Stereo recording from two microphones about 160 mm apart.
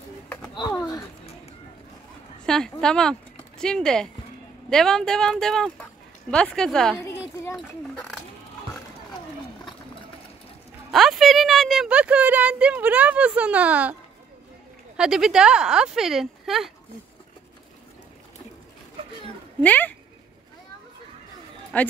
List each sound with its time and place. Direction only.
0.7 s a sound: 20° left (ahead or behind)
2.4 s a sound: 5° left (ahead or behind)
2.8 s speech: 5° left (ahead or behind)
10.9 s speech: centre (ahead or behind)
15.0 s speech: 5° right (ahead or behind)
19.6 s speech: 10° left (ahead or behind)
21.7 s speech: 10° left (ahead or behind)